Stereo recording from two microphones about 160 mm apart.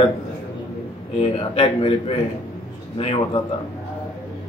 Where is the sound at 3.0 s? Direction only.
35° left (ahead or behind).